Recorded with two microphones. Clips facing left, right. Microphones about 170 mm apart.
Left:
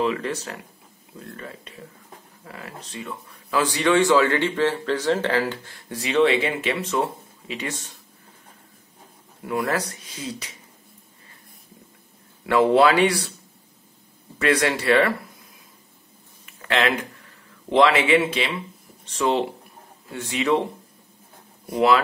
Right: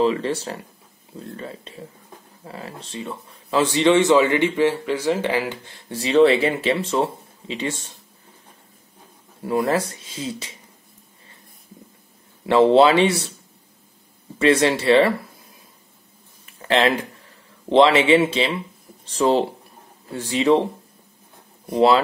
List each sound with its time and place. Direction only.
0.0 s speech: 30° right (ahead or behind); by 5.6 s 15° right (ahead or behind)
5.9 s speech: 30° right (ahead or behind)
9.4 s speech: 30° right (ahead or behind)
12.4 s speech: 25° right (ahead or behind)
14.4 s speech: 25° right (ahead or behind)
16.4 s a sound: 30° right (ahead or behind)
17.6 s speech: 25° right (ahead or behind)
21.6 s speech: 30° right (ahead or behind)